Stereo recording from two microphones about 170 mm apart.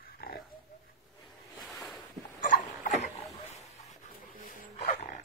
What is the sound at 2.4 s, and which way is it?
Dog, 50° left (ahead or behind).